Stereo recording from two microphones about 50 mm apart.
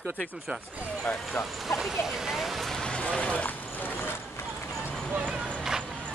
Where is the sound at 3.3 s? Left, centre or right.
Left.